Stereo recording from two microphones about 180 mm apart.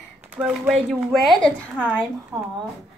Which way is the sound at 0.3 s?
Centre (ahead or behind).